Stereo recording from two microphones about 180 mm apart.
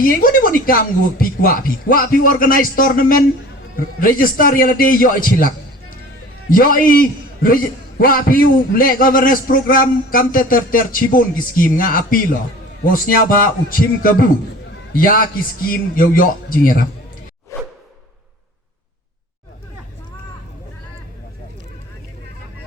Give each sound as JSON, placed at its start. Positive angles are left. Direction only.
{"t": 0.0, "sound": "a man's voice", "side_deg": 50}
{"t": 6.5, "sound": "a man's voice", "side_deg": 50}
{"t": 17.5, "sound": "whoosh", "side_deg": 15}